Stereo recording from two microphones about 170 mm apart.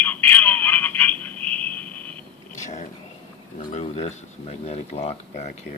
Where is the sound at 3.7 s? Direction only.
35° left (ahead or behind).